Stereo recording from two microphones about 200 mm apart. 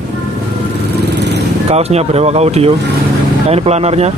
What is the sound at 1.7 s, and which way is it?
Speech, 30° right (ahead or behind).